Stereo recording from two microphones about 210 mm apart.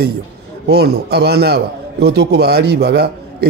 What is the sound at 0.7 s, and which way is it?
A man's voice, 50° right (ahead or behind).